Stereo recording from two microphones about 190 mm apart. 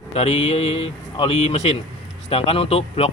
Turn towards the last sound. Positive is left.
turn(degrees=30)  # may be behind; listen again after turning